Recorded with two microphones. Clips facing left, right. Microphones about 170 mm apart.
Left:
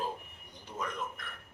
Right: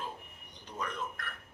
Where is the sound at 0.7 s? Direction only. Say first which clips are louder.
Left 1 dB; 10° left (ahead or behind).